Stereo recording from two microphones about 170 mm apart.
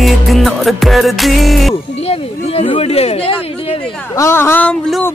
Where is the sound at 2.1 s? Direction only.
35° left (ahead or behind).